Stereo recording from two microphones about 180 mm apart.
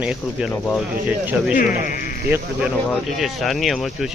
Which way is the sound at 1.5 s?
50° left (ahead or behind).